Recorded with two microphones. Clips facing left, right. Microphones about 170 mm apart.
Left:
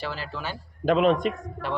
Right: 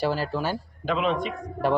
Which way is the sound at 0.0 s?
45° right (ahead or behind).